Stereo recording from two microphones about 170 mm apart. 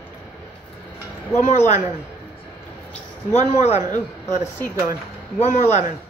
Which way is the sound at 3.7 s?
15° right (ahead or behind).